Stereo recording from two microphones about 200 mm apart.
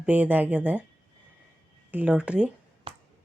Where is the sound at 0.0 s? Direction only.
5° right (ahead or behind).